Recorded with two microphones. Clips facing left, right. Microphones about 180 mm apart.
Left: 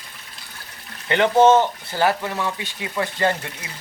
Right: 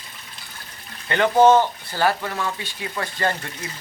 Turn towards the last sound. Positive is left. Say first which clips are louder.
# left 3 dB
turn(degrees=20)  # may be behind; listen again after turning